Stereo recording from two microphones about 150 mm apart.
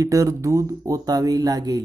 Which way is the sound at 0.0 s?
20° right (ahead or behind).